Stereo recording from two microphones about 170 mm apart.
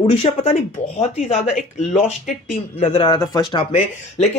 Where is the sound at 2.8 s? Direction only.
30° left (ahead or behind).